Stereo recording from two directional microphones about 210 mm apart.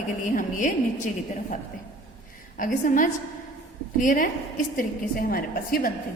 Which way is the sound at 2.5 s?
40° left (ahead or behind).